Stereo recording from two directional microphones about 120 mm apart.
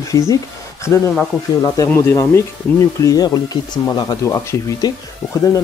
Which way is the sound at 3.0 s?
30° left (ahead or behind).